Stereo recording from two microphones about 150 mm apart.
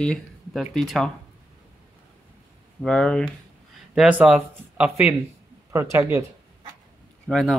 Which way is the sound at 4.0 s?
10° right (ahead or behind).